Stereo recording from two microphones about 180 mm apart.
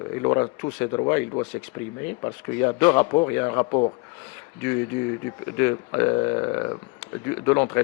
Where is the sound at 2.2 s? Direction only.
20° left (ahead or behind).